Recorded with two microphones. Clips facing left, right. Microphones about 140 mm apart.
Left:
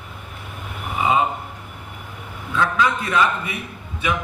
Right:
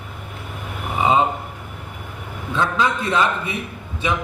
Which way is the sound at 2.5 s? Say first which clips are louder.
Even; 30° right (ahead or behind).